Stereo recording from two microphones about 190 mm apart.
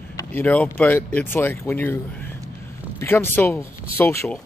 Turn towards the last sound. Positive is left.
turn(degrees=10)  # may be behind; listen again after turning